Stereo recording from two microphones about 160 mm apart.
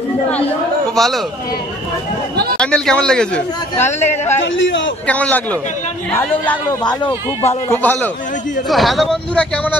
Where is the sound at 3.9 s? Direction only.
45° left (ahead or behind).